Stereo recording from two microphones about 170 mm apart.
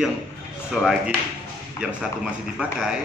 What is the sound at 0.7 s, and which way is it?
Speech, 5° right (ahead or behind).